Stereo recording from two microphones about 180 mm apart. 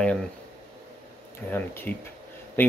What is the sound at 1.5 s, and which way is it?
Speech, 10° left (ahead or behind).